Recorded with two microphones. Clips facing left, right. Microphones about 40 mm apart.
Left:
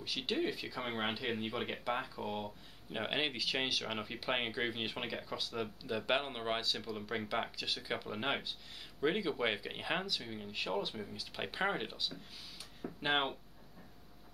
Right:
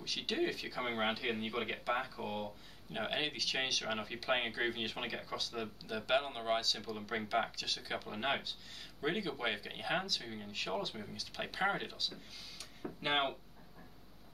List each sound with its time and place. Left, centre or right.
0.0 s speech: centre
7.0 s speech: centre
7.5 s speech: centre
8.1 s speech: centre
13.0 s speech: centre